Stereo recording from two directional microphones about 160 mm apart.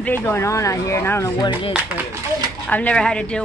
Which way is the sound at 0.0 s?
10° left (ahead or behind).